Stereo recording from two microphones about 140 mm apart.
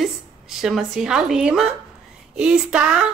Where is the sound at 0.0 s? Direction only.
5° right (ahead or behind).